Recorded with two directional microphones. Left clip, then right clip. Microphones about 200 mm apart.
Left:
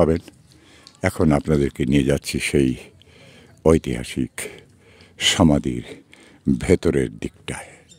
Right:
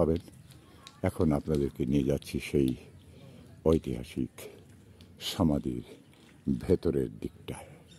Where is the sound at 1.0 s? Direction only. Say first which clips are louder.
Left 10 dB; 20° left (ahead or behind).